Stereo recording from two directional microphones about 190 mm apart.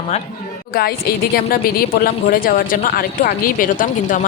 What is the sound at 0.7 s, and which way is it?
Speech, 50° left (ahead or behind).